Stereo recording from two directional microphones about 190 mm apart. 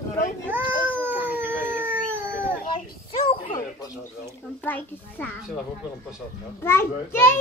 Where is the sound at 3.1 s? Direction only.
25° left (ahead or behind).